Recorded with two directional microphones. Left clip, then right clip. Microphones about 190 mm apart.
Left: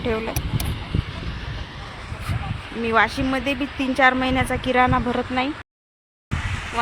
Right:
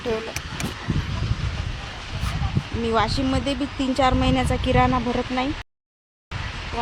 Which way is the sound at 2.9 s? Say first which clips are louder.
Left 3 dB; 10° right (ahead or behind).